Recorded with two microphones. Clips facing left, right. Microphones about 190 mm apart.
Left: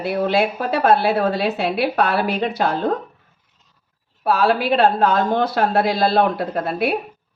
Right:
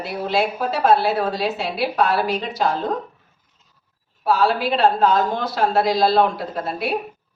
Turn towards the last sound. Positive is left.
turn(degrees=60)  # may be behind; listen again after turning